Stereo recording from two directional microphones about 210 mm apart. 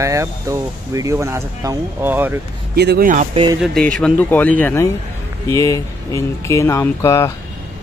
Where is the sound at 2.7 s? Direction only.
50° right (ahead or behind).